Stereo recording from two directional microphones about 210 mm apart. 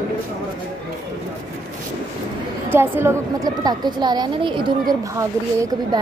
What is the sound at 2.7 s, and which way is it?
A woman's voice, 10° right (ahead or behind).